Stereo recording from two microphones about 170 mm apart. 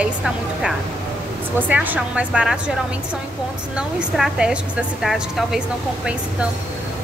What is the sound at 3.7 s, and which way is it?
A woman's voice, 5° right (ahead or behind).